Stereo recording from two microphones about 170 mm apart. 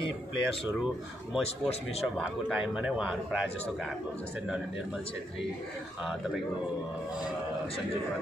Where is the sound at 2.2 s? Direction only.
5° right (ahead or behind).